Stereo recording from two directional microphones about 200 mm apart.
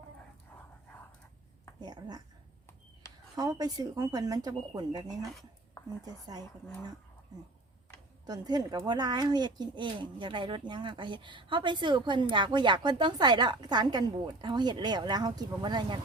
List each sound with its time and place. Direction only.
1.8 s speech: 20° right (ahead or behind)
3.3 s a woman's voice: 20° right (ahead or behind)
8.3 s a woman's voice: 20° right (ahead or behind)